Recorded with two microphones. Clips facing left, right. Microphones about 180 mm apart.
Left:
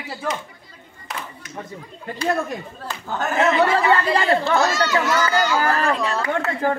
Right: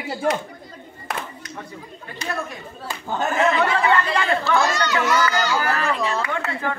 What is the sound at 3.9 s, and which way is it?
Speech, 35° left (ahead or behind).